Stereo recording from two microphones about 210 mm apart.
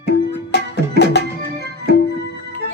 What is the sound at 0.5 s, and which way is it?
Music, 55° left (ahead or behind).